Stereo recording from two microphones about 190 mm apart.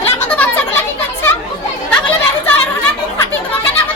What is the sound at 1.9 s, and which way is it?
Chatter, 10° left (ahead or behind).